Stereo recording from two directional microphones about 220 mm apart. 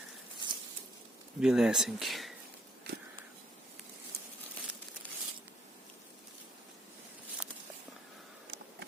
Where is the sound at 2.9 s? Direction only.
50° right (ahead or behind).